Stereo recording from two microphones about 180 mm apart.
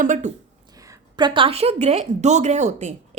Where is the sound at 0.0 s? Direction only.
45° right (ahead or behind).